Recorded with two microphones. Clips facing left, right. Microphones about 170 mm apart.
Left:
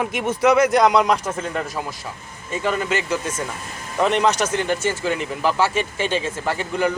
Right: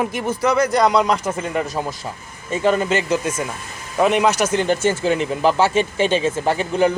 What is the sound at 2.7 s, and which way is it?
Speech, 25° right (ahead or behind).